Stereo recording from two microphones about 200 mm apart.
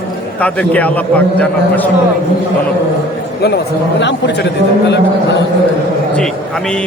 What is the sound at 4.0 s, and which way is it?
Speech, 60° left (ahead or behind).